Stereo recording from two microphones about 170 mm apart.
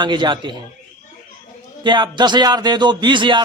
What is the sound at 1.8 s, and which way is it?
Speech, 25° right (ahead or behind).